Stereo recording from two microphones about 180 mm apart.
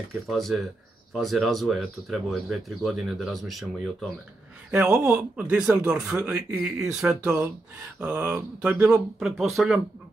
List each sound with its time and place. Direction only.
0.3 s speech: centre (ahead or behind)